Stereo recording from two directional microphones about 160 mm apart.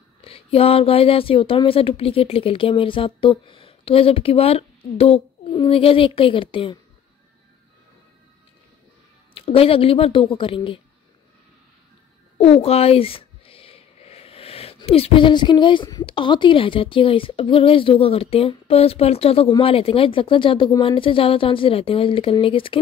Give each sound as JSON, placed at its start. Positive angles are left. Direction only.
{"t": 0.2, "sound": "speech", "side_deg": 35}
{"t": 9.3, "sound": "speech", "side_deg": 35}
{"t": 12.4, "sound": "speech", "side_deg": 40}